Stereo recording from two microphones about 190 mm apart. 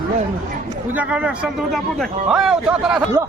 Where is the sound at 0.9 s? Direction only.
5° right (ahead or behind).